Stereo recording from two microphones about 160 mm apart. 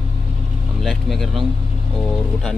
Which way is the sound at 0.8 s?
Centre (ahead or behind).